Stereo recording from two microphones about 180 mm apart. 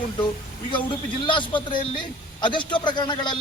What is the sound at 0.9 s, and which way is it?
A man's voice, 25° left (ahead or behind).